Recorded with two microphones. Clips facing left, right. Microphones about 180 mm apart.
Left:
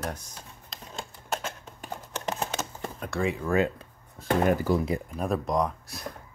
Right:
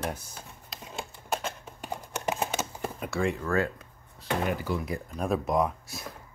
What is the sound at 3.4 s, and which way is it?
Speech, 20° left (ahead or behind).